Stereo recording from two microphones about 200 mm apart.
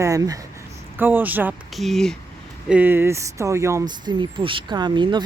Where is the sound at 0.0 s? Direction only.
15° right (ahead or behind).